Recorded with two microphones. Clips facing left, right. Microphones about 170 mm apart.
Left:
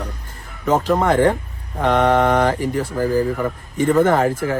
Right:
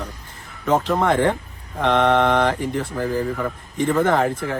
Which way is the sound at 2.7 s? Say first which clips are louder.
Left 3 dB; 40° left (ahead or behind).